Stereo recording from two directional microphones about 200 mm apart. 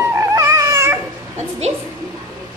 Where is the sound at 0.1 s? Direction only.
15° right (ahead or behind).